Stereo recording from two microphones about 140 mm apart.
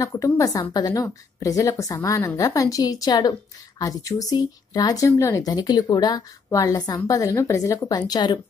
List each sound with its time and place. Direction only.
0.0 s a woman's voice: 25° left (ahead or behind)